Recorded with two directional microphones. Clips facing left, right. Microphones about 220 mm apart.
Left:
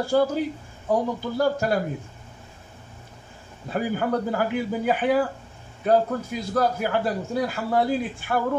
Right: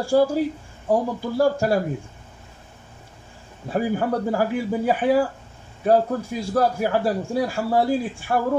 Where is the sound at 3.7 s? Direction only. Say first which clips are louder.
Right 2 dB; 30° right (ahead or behind).